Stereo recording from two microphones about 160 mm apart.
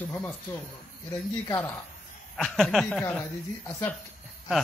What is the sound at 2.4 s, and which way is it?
Speech, 5° left (ahead or behind).